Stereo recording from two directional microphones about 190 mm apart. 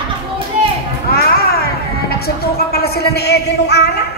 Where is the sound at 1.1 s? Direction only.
55° left (ahead or behind).